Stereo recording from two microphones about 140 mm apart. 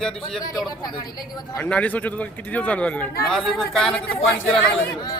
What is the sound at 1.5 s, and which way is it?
Speech, 10° left (ahead or behind).